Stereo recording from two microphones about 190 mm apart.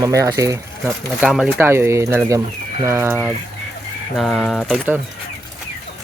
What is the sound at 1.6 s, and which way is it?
Speech, 15° right (ahead or behind).